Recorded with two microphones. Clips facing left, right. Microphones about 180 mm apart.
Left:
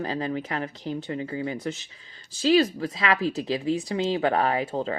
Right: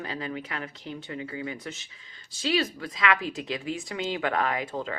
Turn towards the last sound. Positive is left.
turn(degrees=35)  # may be behind; listen again after turning